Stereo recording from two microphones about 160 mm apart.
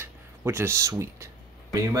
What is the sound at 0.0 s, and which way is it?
Speech, 15° right (ahead or behind).